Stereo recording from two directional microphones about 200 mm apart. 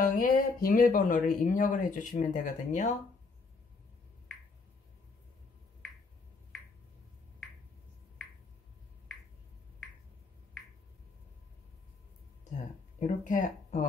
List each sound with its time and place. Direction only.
0.0 s speech: 40° left (ahead or behind)
13.0 s speech: 40° left (ahead or behind)